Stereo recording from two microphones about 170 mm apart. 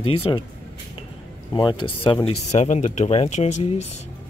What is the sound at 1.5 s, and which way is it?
Speech, 25° left (ahead or behind).